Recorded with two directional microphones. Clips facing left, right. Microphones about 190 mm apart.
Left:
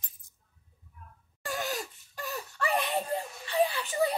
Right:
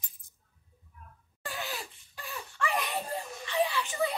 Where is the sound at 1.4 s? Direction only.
45° left (ahead or behind).